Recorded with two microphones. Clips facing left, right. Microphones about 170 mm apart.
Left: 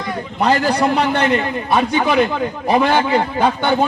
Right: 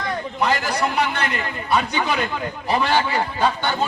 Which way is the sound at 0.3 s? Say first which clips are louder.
Left 7 dB; 65° left (ahead or behind).